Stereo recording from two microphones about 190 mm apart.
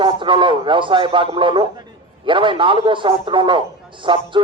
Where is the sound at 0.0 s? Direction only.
25° right (ahead or behind).